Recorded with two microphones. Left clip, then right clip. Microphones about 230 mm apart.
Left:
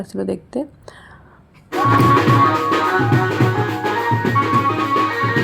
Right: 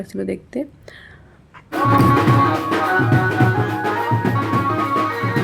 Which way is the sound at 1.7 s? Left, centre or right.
Right.